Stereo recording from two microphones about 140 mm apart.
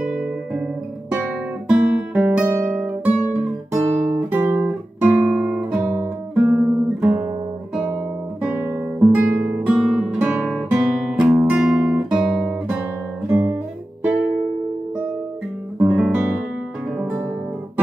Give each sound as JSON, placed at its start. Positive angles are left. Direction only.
{"t": 0.0, "sound": "guitar", "side_deg": -5}
{"t": 1.7, "sound": "guitar", "side_deg": -10}
{"t": 4.1, "sound": "guitar", "side_deg": -15}
{"t": 9.1, "sound": "guitar", "side_deg": -10}
{"t": 13.3, "sound": "guitar", "side_deg": -20}
{"t": 15.8, "sound": "guitar", "side_deg": -10}